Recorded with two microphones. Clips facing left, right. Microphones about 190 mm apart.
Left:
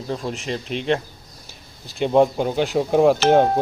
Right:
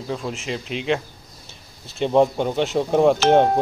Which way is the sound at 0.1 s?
Centre (ahead or behind).